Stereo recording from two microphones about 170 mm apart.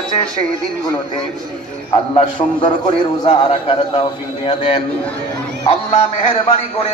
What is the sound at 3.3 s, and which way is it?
A man's voice, 40° left (ahead or behind).